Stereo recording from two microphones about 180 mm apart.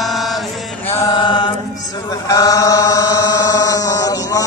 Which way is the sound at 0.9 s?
20° left (ahead or behind).